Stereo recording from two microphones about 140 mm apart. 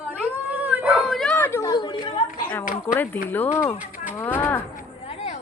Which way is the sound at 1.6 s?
30° left (ahead or behind).